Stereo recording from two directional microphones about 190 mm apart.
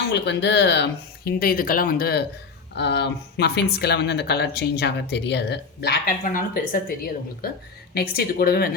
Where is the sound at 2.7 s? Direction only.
65° left (ahead or behind); by 6.9 s 50° left (ahead or behind).